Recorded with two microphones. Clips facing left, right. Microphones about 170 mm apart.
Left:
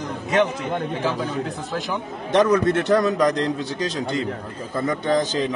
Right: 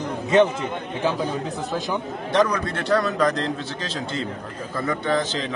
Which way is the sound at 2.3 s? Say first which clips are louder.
Left 4 dB; 20° left (ahead or behind).